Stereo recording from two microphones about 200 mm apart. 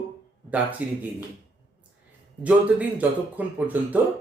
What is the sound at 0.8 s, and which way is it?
Speech, 10° right (ahead or behind).